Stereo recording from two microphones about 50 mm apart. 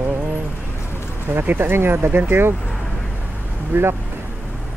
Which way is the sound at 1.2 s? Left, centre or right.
Right.